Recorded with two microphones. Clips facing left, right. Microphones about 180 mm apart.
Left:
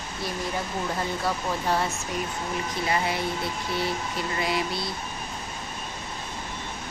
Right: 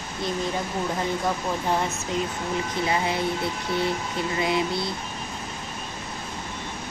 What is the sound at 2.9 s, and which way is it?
Speech, 20° right (ahead or behind).